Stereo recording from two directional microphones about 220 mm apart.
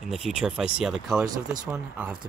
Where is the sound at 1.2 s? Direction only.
15° right (ahead or behind).